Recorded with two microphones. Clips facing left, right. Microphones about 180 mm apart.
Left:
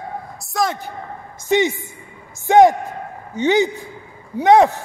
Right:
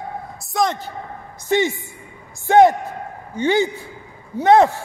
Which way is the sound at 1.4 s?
20° left (ahead or behind).